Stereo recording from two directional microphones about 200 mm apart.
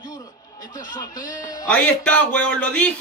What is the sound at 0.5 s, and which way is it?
Speech, 40° left (ahead or behind).